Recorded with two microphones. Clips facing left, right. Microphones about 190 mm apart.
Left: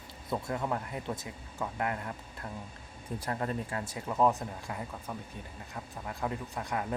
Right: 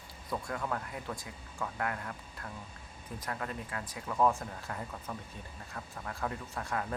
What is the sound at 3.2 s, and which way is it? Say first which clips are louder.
Speech: left 5 dB; 30° left (ahead or behind).